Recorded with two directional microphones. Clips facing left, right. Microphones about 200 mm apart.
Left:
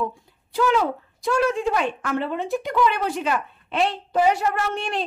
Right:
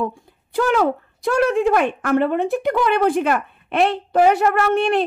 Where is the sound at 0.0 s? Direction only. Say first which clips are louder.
Right 3 dB; 55° right (ahead or behind).